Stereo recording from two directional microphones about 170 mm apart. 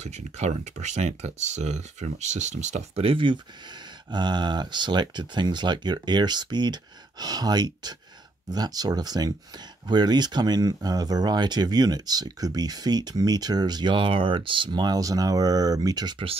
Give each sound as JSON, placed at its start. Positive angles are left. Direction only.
{"t": 0.0, "sound": "speech", "side_deg": -40}